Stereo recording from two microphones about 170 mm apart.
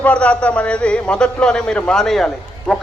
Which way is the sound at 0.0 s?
5° left (ahead or behind).